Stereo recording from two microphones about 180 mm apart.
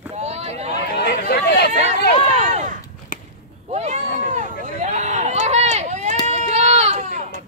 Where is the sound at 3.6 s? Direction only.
40° right (ahead or behind).